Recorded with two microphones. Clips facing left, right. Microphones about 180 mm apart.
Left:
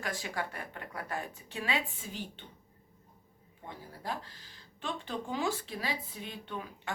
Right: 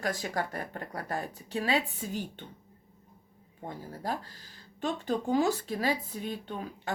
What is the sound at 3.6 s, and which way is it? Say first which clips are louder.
Speech: right 5 dB; 40° right (ahead or behind).